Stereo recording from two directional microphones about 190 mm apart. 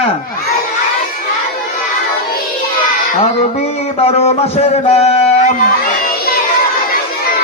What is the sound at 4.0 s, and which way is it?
A man's voice, 30° left (ahead or behind).